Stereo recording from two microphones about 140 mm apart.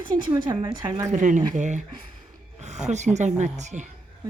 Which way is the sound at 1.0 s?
60° right (ahead or behind).